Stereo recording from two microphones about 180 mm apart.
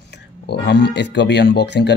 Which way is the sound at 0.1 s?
70° left (ahead or behind).